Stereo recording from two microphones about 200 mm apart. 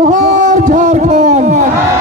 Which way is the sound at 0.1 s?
40° right (ahead or behind).